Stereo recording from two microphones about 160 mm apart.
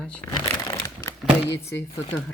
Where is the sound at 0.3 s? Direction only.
20° left (ahead or behind).